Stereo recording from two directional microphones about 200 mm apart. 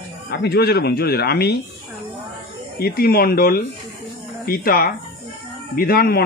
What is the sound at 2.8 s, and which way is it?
Speech, 50° left (ahead or behind).